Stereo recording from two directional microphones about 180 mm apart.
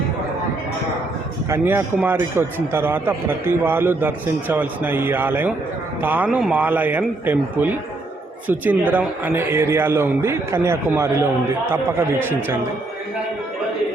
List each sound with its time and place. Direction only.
1.5 s a man's voice: 10° right (ahead or behind)